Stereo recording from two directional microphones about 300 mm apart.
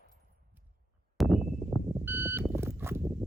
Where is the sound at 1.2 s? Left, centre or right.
Centre.